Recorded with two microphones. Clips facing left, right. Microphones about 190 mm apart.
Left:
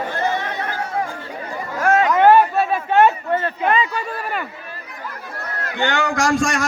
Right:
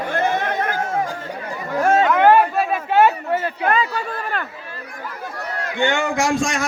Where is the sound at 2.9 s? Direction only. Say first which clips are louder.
Even; 5° right (ahead or behind).